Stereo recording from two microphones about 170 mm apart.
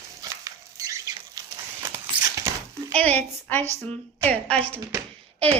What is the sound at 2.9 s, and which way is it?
A woman's voice, 10° left (ahead or behind).